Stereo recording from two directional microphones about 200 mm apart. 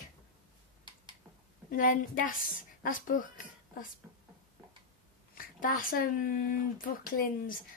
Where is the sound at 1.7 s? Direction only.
45° left (ahead or behind).